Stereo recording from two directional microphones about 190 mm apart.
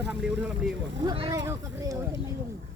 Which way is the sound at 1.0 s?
30° right (ahead or behind).